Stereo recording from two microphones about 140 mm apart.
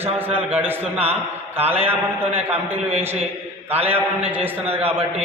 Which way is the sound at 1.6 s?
45° right (ahead or behind).